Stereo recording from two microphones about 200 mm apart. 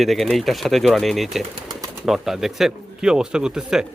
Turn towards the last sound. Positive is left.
turn(degrees=-5)  # may be behind; listen again after turning